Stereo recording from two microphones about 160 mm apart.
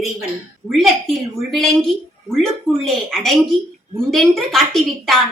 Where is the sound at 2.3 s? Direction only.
Centre (ahead or behind).